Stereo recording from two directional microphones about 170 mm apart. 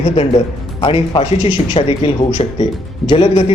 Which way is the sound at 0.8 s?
30° left (ahead or behind).